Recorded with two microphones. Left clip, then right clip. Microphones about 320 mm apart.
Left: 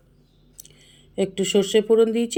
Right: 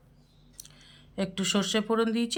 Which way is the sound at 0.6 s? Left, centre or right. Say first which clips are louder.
Left 2 dB; centre.